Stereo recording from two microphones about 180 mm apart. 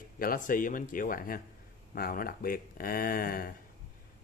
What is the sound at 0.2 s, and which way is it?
Speech, 50° left (ahead or behind).